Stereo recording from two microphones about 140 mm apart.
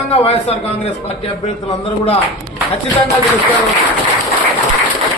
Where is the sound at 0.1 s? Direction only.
45° left (ahead or behind).